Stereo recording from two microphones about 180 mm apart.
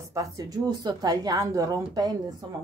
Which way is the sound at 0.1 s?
20° right (ahead or behind).